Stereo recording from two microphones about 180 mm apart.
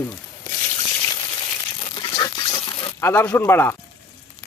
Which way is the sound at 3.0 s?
10° left (ahead or behind).